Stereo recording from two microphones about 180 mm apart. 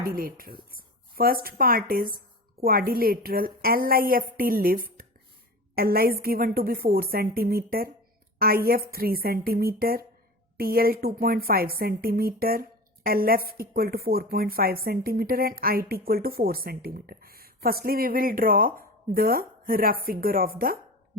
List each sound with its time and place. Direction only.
0.0 s a woman's voice: 55° right (ahead or behind)